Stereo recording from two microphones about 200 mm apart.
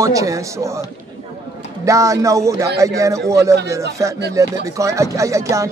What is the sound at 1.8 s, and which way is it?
Speech, 15° right (ahead or behind).